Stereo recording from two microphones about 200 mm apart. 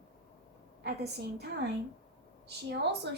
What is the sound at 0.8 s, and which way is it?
A woman's voice, 55° right (ahead or behind).